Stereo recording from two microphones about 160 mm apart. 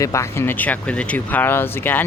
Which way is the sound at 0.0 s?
20° left (ahead or behind).